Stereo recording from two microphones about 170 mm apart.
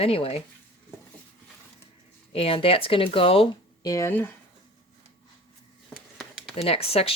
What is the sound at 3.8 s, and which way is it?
Speech, 20° left (ahead or behind).